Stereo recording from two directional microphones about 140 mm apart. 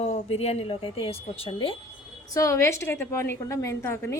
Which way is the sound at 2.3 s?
20° left (ahead or behind).